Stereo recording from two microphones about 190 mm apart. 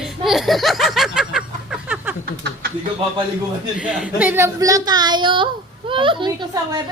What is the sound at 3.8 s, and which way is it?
A woman's voice, 5° right (ahead or behind).